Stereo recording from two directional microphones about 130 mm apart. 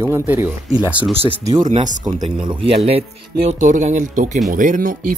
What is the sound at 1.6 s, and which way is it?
Speech, 75° right (ahead or behind).